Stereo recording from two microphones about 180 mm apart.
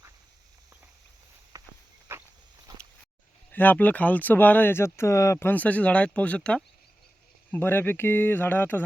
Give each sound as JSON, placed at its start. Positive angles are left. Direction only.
{"t": 1.5, "sound": "walk", "side_deg": -20}
{"t": 2.1, "sound": "a sound", "side_deg": -15}
{"t": 3.5, "sound": "speech", "side_deg": 10}